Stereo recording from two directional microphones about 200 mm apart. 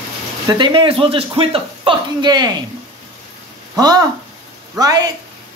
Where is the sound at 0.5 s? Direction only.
25° right (ahead or behind).